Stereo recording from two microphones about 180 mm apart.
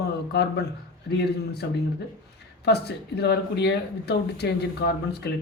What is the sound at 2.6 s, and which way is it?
A man's voice, 65° left (ahead or behind).